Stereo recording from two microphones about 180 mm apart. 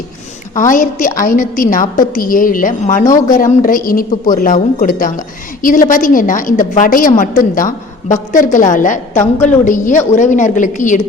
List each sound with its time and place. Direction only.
0.5 s a woman's voice: 45° left (ahead or behind)